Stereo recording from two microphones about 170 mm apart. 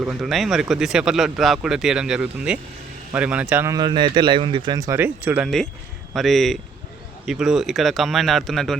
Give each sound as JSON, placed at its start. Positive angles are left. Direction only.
{"t": 0.0, "sound": "speech", "side_deg": -5}
{"t": 3.8, "sound": "speech", "side_deg": -25}
{"t": 6.1, "sound": "speech", "side_deg": 0}